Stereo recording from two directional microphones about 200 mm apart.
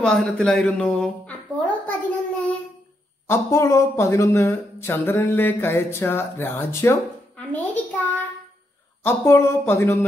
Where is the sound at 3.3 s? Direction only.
15° left (ahead or behind).